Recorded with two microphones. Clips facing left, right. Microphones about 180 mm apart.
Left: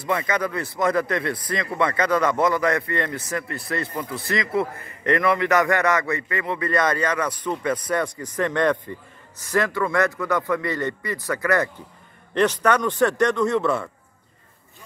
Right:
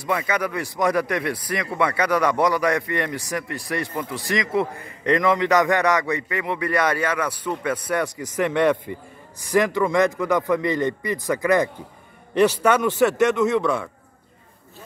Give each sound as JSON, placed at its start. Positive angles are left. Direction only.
{"t": 0.0, "sound": "a man's voice", "side_deg": -10}